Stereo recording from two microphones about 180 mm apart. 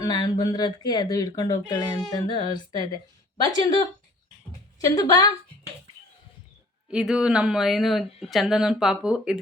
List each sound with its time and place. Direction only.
0.0 s a woman's voice: 20° left (ahead or behind)
4.8 s speech: 20° left (ahead or behind)
6.9 s speech: 5° right (ahead or behind)